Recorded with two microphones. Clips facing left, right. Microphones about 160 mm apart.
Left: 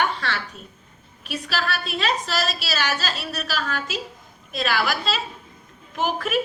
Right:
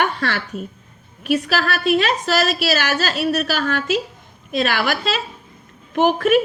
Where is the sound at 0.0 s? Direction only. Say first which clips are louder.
Right 4 dB; 60° right (ahead or behind).